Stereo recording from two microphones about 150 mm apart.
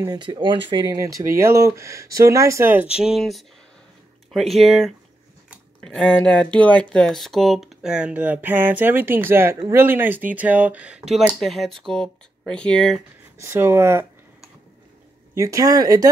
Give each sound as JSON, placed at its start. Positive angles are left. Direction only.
{"t": 0.0, "sound": "speech", "side_deg": -25}
{"t": 0.9, "sound": "speech", "side_deg": -20}
{"t": 3.0, "sound": "speech", "side_deg": 0}
{"t": 13.4, "sound": "speech", "side_deg": -15}
{"t": 15.3, "sound": "speech", "side_deg": -20}